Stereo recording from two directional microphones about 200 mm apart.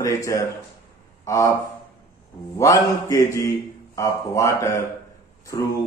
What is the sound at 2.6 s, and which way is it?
A man's voice, 20° left (ahead or behind).